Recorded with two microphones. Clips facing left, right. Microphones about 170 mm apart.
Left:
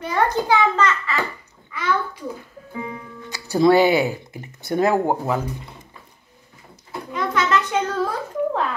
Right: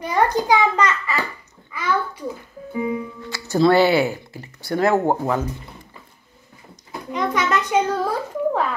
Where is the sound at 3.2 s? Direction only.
15° left (ahead or behind).